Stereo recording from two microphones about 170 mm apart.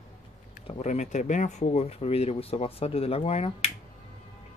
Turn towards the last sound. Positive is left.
turn(degrees=35)  # may be behind; listen again after turning